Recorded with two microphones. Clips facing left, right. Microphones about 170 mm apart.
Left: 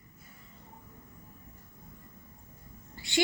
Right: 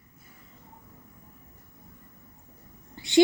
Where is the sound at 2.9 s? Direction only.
20° right (ahead or behind).